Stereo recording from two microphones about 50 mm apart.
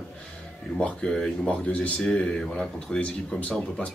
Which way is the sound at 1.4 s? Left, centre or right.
Left.